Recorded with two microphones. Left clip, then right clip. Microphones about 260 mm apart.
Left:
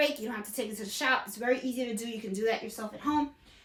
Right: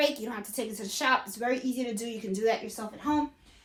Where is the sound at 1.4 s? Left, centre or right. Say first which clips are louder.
Even; centre.